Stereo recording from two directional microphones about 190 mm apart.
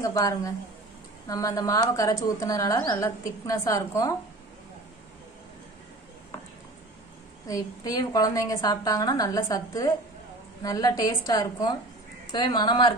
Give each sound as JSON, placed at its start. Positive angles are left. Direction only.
{"t": 0.0, "sound": "a woman's voice", "side_deg": 15}
{"t": 7.4, "sound": "a woman's voice", "side_deg": 20}